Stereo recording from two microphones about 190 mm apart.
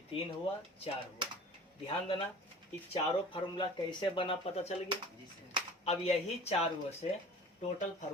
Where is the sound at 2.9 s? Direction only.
30° left (ahead or behind).